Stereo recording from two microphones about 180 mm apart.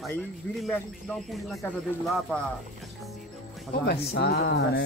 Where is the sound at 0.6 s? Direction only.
Centre (ahead or behind).